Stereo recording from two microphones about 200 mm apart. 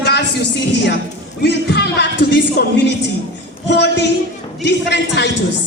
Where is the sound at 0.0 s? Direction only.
55° left (ahead or behind).